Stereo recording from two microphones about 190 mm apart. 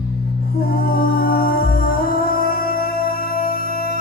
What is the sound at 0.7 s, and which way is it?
Music, 50° left (ahead or behind).